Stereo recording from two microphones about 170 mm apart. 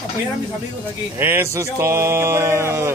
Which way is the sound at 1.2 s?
15° right (ahead or behind).